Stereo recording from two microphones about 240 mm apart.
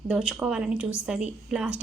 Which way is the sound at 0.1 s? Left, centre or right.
Centre.